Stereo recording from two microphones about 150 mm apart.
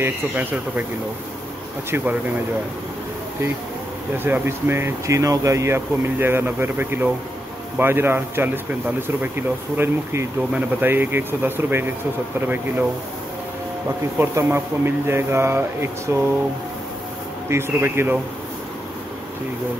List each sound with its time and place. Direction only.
0.0 s speech: 15° right (ahead or behind)
4.2 s speech: 15° right (ahead or behind)
10.5 s speech: 15° right (ahead or behind)
14.1 s speech: 15° right (ahead or behind)
17.5 s speech: 15° right (ahead or behind)